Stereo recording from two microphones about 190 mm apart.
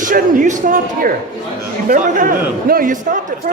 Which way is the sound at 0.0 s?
45° right (ahead or behind).